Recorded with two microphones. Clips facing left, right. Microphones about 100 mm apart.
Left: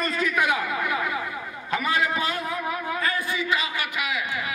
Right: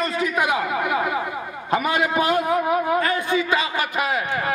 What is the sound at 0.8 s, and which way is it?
Speech, 45° right (ahead or behind).